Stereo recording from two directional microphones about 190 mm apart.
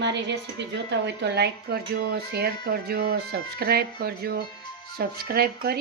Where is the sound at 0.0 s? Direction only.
65° right (ahead or behind).